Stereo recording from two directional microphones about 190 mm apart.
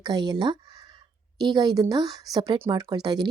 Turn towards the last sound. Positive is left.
turn(degrees=-20)  # may be behind; listen again after turning